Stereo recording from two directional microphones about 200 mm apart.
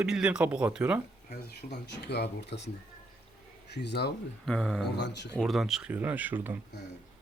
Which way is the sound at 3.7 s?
55° left (ahead or behind).